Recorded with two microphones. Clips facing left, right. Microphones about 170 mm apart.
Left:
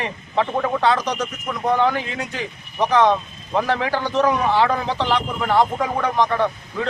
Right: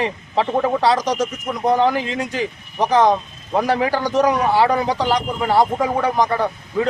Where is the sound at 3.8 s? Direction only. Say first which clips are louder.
Right 3 dB; 10° right (ahead or behind).